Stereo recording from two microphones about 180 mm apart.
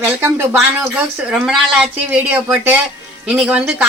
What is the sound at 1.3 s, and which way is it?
A woman's voice, 5° right (ahead or behind).